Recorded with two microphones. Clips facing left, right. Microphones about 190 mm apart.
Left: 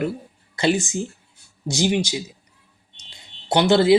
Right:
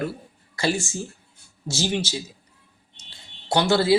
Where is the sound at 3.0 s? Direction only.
15° left (ahead or behind).